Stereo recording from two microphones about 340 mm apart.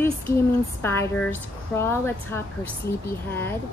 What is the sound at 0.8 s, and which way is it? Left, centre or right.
A woman's voice, centre.